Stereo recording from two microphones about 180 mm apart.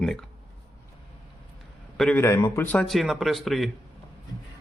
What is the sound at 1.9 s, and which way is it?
Speech, 10° left (ahead or behind).